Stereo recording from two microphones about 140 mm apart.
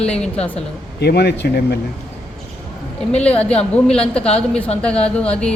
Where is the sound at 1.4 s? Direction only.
90° left.